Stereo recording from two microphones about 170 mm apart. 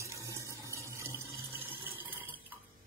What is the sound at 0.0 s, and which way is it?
Water, 20° right (ahead or behind).